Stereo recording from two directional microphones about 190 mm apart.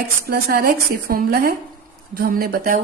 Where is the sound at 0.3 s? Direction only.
50° right (ahead or behind).